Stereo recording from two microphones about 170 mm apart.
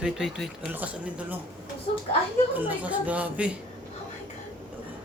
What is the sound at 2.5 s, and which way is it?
Speech, 10° right (ahead or behind).